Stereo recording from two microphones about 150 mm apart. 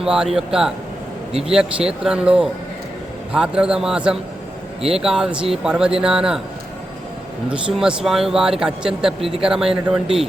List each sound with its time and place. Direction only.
0.0 s speech: 5° right (ahead or behind)
7.5 s speech: 5° right (ahead or behind)
9.2 s speech: 40° right (ahead or behind)
9.5 s speech: 5° right (ahead or behind)